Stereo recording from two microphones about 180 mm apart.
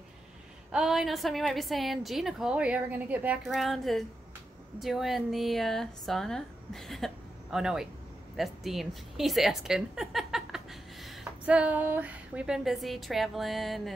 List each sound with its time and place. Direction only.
0.7 s a woman's voice: 5° right (ahead or behind)